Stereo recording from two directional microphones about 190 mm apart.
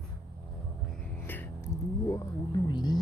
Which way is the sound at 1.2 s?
10° left (ahead or behind).